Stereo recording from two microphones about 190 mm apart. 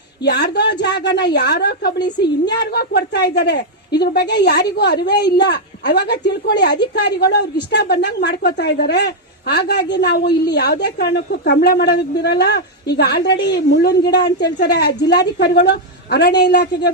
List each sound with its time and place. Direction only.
0.3 s a woman's voice: 60° left (ahead or behind)